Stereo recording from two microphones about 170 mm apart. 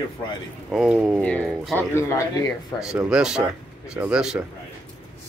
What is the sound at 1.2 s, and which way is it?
Speech, 10° left (ahead or behind).